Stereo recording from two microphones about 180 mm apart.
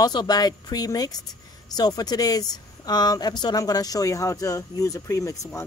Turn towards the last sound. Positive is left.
turn(degrees=20)  # may be behind; listen again after turning